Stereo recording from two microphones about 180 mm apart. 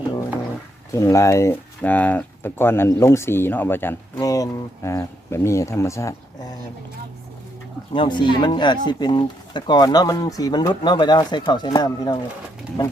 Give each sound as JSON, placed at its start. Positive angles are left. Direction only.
{"t": 0.9, "sound": "speech", "side_deg": 15}
{"t": 7.9, "sound": "speech", "side_deg": 25}